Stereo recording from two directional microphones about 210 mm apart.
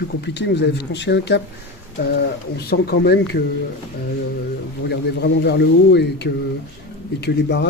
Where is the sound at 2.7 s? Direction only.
50° left (ahead or behind).